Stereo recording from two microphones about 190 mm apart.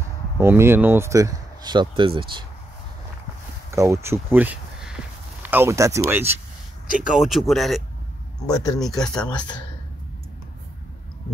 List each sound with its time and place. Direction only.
0.4 s speech: 10° right (ahead or behind)
3.7 s speech: 15° right (ahead or behind)
7.2 s speech: centre (ahead or behind)
8.5 s speech: 20° left (ahead or behind)
8.7 s speech: centre (ahead or behind)